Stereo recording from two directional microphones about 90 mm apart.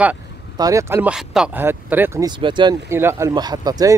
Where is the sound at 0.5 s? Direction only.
45° right (ahead or behind).